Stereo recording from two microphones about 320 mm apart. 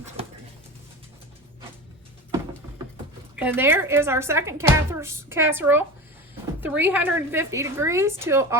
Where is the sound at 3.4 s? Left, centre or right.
Centre.